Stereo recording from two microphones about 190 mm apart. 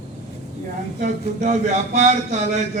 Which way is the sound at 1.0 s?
40° right (ahead or behind).